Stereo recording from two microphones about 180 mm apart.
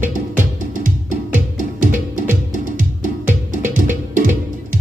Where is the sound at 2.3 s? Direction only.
45° right (ahead or behind).